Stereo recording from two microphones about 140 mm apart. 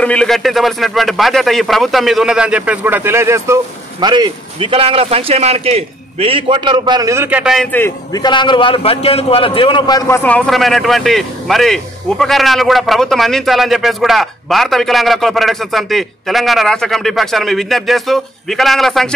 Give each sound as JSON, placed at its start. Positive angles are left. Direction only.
{"t": 0.0, "sound": "speech", "side_deg": 5}
{"t": 4.0, "sound": "a man's voice", "side_deg": -30}
{"t": 7.2, "sound": "a man's voice", "side_deg": -10}
{"t": 7.7, "sound": "a man's voice", "side_deg": 15}
{"t": 8.1, "sound": "a man's voice", "side_deg": 30}
{"t": 10.0, "sound": "speech", "side_deg": 15}